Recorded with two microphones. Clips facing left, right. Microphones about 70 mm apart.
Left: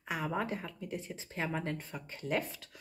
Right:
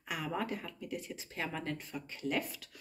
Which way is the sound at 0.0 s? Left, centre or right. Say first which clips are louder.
Left 2 dB; left.